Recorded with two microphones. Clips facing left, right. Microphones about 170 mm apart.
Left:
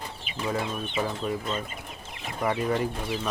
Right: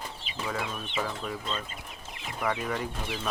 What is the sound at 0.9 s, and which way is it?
Speech, 15° left (ahead or behind).